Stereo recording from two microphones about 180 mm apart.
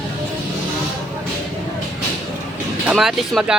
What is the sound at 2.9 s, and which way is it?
Speech, centre (ahead or behind).